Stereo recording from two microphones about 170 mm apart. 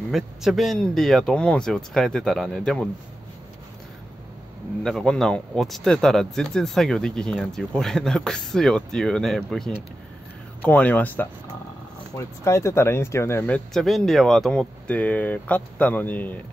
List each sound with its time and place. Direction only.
0.1 s speech: centre (ahead or behind)
4.8 s speech: 5° left (ahead or behind)
12.4 s speech: 15° left (ahead or behind)
13.7 s speech: centre (ahead or behind)